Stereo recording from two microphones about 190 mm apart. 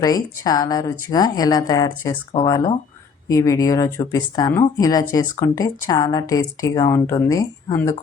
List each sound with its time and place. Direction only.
0.0 s a woman's voice: 20° left (ahead or behind)